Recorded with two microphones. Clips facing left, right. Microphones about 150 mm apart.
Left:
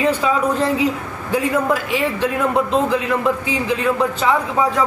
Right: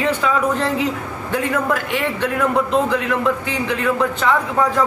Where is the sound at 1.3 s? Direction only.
10° left (ahead or behind).